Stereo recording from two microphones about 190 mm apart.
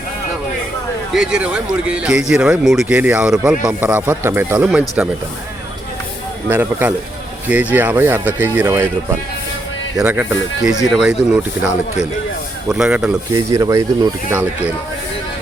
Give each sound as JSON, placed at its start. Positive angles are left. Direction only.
{"t": 1.1, "sound": "speech", "side_deg": -5}
{"t": 6.5, "sound": "speech", "side_deg": -10}
{"t": 10.0, "sound": "speech", "side_deg": -10}
{"t": 13.3, "sound": "speech", "side_deg": -20}